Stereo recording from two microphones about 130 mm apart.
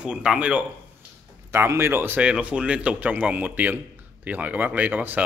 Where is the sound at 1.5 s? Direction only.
20° right (ahead or behind).